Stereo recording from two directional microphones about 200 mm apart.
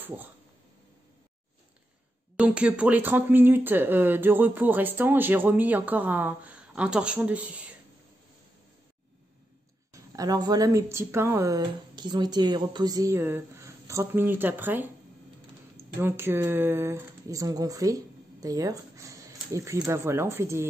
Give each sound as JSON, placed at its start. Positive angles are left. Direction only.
{"t": 0.0, "sound": "speech", "side_deg": -10}
{"t": 2.3, "sound": "speech", "side_deg": -5}
{"t": 10.1, "sound": "speech", "side_deg": -20}